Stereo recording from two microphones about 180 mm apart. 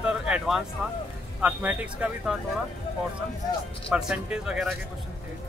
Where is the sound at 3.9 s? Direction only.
Centre (ahead or behind).